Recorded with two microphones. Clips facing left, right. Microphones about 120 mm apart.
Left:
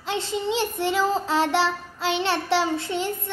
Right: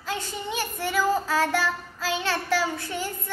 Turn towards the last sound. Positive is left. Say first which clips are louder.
# left 4 dB
turn(degrees=25)  # may be behind; listen again after turning